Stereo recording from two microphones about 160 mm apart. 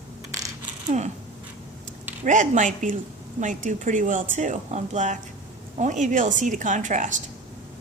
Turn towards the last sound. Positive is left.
turn(degrees=-50)  # may be behind; listen again after turning